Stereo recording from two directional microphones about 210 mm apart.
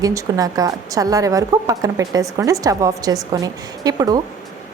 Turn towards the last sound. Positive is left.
turn(degrees=-15)  # may be behind; listen again after turning